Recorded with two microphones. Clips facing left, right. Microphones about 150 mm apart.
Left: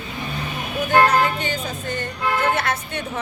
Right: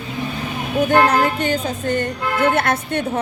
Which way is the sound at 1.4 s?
50° right (ahead or behind).